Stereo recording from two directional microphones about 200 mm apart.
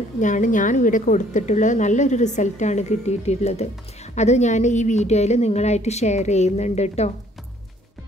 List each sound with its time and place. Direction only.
0.2 s a woman's voice: 40° left (ahead or behind)